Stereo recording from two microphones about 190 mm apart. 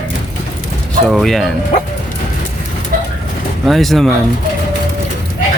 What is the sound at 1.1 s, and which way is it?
Speech, centre (ahead or behind).